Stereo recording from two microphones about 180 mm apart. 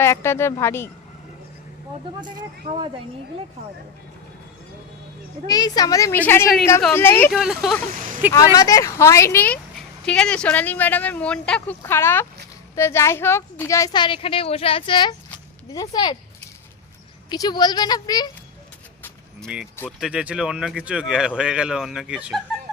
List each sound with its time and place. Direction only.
0.0 s speech: 15° left (ahead or behind)
2.7 s speech: 30° right (ahead or behind)
5.5 s speech: 20° left (ahead or behind)
7.3 s speech: 5° right (ahead or behind)
7.9 s a sound: 50° right (ahead or behind)
8.3 s speech: 20° left (ahead or behind)
17.2 s speech: 20° left (ahead or behind)
19.5 s speech: 5° right (ahead or behind)